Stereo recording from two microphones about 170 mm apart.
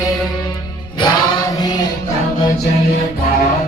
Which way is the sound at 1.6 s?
25° left (ahead or behind).